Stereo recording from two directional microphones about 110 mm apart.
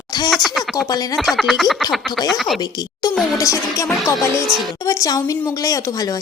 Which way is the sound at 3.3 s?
30° left (ahead or behind).